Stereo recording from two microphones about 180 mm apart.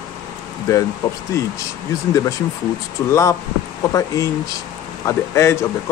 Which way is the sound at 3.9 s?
20° left (ahead or behind).